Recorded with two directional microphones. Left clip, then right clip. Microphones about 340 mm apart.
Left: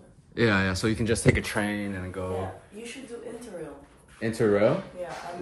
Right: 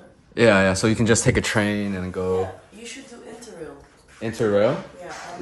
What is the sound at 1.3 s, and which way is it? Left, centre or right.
Speech, right.